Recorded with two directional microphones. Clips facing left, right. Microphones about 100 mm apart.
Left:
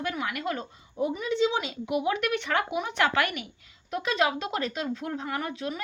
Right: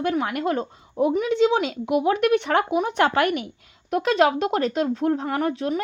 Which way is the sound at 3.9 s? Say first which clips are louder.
Right 7 dB; 60° right (ahead or behind).